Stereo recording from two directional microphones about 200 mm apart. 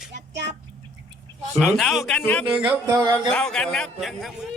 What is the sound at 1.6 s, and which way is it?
Speech, centre (ahead or behind).